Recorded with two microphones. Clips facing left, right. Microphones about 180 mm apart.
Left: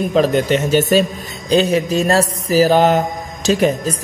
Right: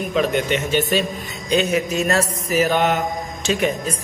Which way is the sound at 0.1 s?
35° left (ahead or behind).